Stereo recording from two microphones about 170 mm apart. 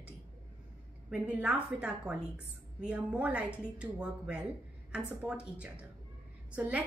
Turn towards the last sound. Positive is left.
turn(degrees=-10)  # may be behind; listen again after turning